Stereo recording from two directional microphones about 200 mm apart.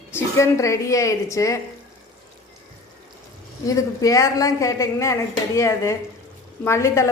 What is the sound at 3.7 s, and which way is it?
A woman's voice, 15° left (ahead or behind).